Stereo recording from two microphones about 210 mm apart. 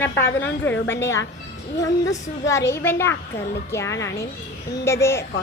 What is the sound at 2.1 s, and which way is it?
A woman's voice, 15° left (ahead or behind).